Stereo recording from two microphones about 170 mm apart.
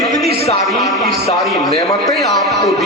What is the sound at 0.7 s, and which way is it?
Music, centre (ahead or behind).